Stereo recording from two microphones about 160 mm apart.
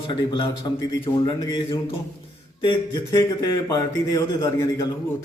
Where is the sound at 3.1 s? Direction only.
25° left (ahead or behind).